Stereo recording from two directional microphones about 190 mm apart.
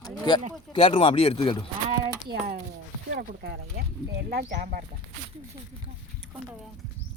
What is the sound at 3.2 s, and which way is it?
Speech, 55° right (ahead or behind).